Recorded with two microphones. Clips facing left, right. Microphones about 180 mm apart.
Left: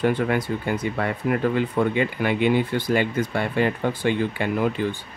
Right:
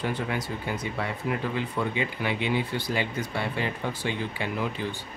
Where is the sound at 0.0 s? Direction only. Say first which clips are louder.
Left 8 dB; 55° left (ahead or behind).